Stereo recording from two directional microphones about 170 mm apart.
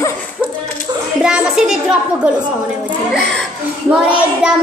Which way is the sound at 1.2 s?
5° right (ahead or behind).